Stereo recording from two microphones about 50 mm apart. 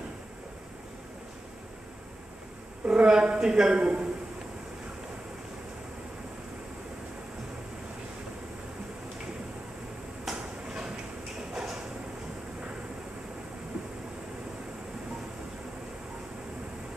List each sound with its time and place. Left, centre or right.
2.8 s a man's voice: centre
10.2 s a sound: centre
11.5 s sliding door: centre